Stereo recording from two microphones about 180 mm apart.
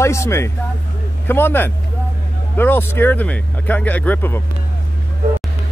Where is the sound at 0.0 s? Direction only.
15° left (ahead or behind).